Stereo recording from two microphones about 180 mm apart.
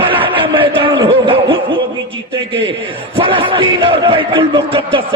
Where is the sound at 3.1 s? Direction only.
30° right (ahead or behind).